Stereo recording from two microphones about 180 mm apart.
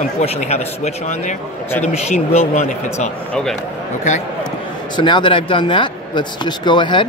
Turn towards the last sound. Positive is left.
turn(degrees=25)  # may be behind; listen again after turning